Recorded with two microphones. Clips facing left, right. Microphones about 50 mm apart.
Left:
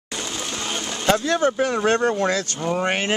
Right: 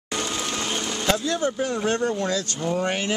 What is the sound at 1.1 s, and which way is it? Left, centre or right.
Speech, left.